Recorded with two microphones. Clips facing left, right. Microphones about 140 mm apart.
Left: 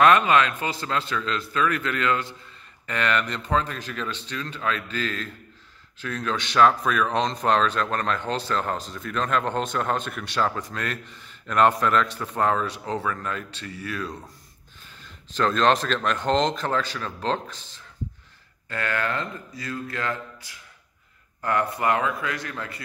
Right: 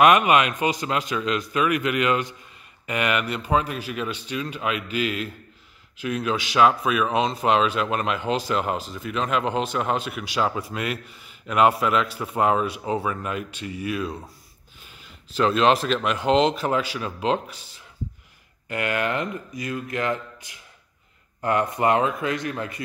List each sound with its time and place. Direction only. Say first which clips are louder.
0.0 s speech: right 1 dB; 15° right (ahead or behind)